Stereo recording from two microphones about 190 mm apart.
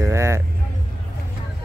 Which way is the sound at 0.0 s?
15° right (ahead or behind).